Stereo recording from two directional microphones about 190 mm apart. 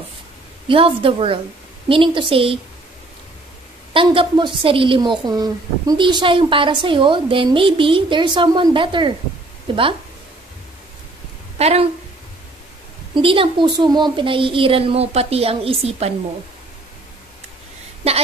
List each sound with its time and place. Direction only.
0.7 s a woman's voice: 30° right (ahead or behind)
3.9 s a woman's voice: 25° right (ahead or behind)
11.5 s a sound: 35° right (ahead or behind)
13.1 s a woman's voice: 25° right (ahead or behind)